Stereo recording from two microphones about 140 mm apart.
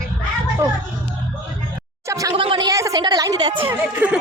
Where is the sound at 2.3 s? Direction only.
40° right (ahead or behind).